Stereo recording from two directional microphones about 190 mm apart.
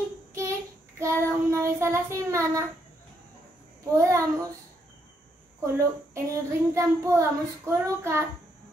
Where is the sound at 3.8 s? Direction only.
15° right (ahead or behind).